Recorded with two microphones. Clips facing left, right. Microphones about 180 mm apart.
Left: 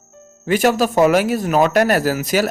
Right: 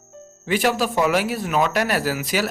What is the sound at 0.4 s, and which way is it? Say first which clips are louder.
Speech: left 5 dB; 45° left (ahead or behind).